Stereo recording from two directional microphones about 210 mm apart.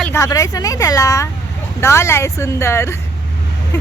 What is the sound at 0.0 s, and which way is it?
Speech, 15° left (ahead or behind).